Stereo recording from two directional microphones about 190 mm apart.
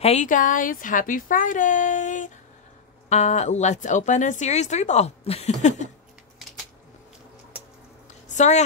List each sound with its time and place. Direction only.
0.0 s a woman's voice: 35° left (ahead or behind)
8.3 s a woman's voice: 40° left (ahead or behind)